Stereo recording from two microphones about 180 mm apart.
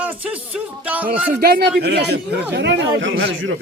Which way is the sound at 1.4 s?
60° right (ahead or behind).